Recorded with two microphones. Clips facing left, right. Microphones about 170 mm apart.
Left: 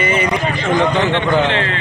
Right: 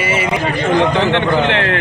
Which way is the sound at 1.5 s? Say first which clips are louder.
Right 2 dB; 65° right (ahead or behind).